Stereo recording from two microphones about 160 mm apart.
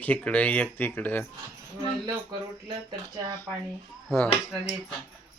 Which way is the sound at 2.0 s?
30° right (ahead or behind).